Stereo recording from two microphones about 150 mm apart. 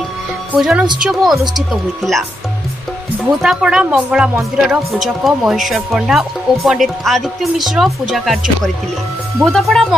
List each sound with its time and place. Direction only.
0.5 s speech: 5° right (ahead or behind)
3.4 s speech: 5° right (ahead or behind)
9.4 s speech: centre (ahead or behind)